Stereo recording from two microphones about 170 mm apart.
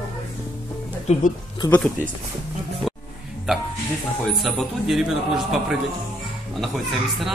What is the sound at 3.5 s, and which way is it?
A man's voice, 5° right (ahead or behind).